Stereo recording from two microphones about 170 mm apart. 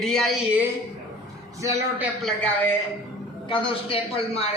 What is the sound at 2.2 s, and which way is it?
Speech, 10° left (ahead or behind).